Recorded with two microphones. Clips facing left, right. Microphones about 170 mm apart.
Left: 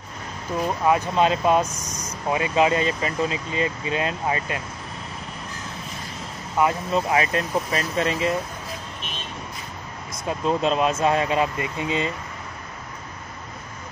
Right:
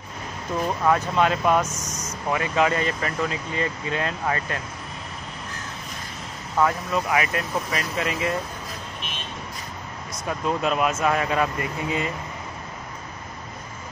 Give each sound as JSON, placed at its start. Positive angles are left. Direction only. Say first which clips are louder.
{"t": 0.8, "sound": "speech", "louder": "left 1 dB", "side_deg": 20}
{"t": 6.6, "sound": "speech", "louder": "left 1 dB", "side_deg": 25}
{"t": 10.2, "sound": "speech", "louder": "left 2 dB", "side_deg": 25}